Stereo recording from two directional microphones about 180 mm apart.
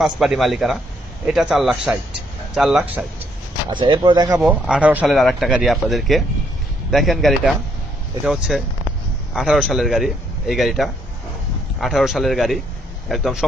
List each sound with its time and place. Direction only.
0.0 s speech: centre (ahead or behind)
3.8 s speech: 25° right (ahead or behind)
4.4 s speech: 5° right (ahead or behind)